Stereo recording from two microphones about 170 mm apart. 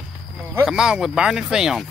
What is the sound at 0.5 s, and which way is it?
Speech, 5° right (ahead or behind).